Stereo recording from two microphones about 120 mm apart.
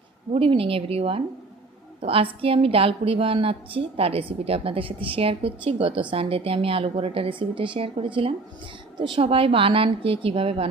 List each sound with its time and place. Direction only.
0.3 s a woman's voice: 50° right (ahead or behind)